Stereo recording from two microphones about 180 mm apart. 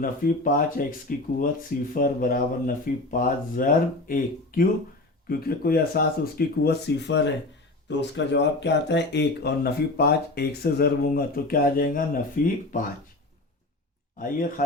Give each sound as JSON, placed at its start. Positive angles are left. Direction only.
{"t": 0.0, "sound": "speech", "side_deg": 50}
{"t": 14.2, "sound": "speech", "side_deg": 50}